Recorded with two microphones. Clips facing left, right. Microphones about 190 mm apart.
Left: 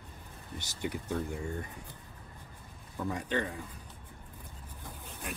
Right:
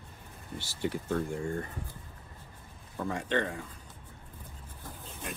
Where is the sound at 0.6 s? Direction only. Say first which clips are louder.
Right 3 dB; 15° left (ahead or behind).